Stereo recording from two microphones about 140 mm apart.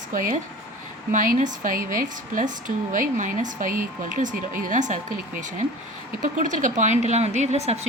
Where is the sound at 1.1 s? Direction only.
70° right (ahead or behind).